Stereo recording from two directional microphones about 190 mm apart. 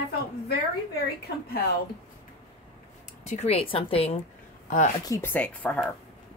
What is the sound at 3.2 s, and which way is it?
Speech, 35° left (ahead or behind).